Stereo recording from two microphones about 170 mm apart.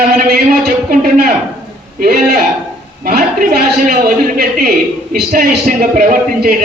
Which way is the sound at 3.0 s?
55° right (ahead or behind).